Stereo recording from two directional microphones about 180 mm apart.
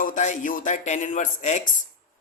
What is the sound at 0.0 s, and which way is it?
A man's voice, 45° left (ahead or behind).